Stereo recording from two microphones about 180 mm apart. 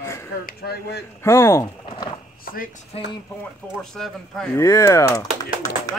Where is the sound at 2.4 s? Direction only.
55° left (ahead or behind).